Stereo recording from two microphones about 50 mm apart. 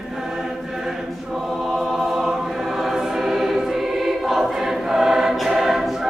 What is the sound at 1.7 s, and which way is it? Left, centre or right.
Choir, centre.